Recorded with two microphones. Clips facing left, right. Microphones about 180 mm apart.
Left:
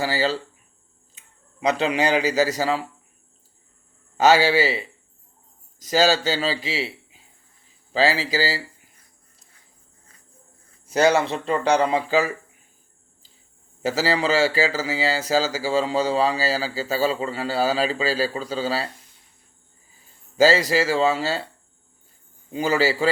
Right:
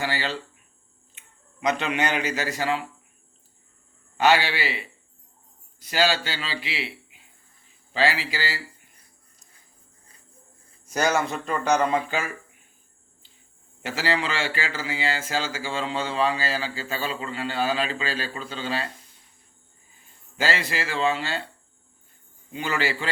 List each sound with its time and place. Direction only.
0.0 s speech: 40° left (ahead or behind)
1.6 s speech: 35° left (ahead or behind)
4.2 s speech: 40° left (ahead or behind)
5.9 s speech: 40° left (ahead or behind)
10.8 s speech: 30° left (ahead or behind)
13.8 s speech: 40° left (ahead or behind)
20.3 s speech: 40° left (ahead or behind)
22.5 s speech: 40° left (ahead or behind)